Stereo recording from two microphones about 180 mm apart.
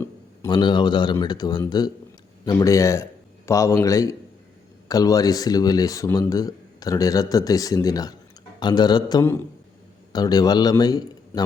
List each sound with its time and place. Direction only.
0.0 s a man's voice: 20° left (ahead or behind)